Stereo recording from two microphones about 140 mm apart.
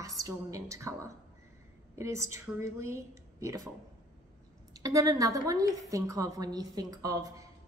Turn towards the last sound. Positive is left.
turn(degrees=-25)  # may be behind; listen again after turning